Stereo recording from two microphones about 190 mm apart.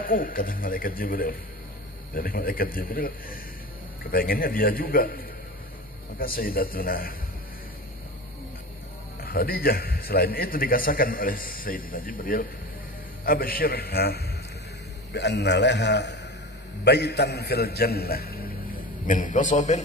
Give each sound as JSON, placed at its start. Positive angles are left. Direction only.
{"t": 0.0, "sound": "a man's voice", "side_deg": 50}
{"t": 9.2, "sound": "a man's voice", "side_deg": 55}
{"t": 19.0, "sound": "a man's voice", "side_deg": 40}